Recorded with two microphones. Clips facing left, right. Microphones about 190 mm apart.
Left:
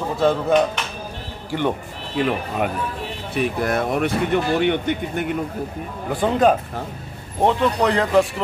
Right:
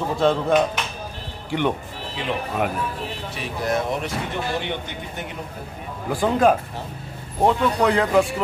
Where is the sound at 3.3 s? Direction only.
60° left (ahead or behind).